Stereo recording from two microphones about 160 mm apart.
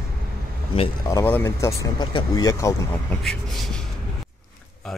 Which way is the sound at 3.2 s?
Centre (ahead or behind).